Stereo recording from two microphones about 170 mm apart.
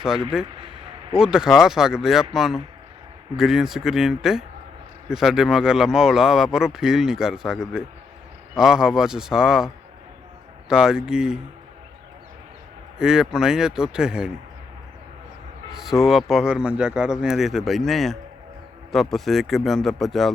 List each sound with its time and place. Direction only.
0.0 s speech: 5° right (ahead or behind)
0.4 s speech: 30° right (ahead or behind)
1.2 s speech: 5° right (ahead or behind)
13.0 s speech: 5° right (ahead or behind)
15.7 s speech: centre (ahead or behind)